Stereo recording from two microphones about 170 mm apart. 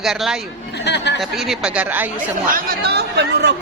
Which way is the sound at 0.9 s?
90° left.